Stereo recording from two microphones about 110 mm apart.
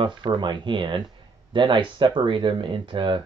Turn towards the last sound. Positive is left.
turn(degrees=-50)  # may be behind; listen again after turning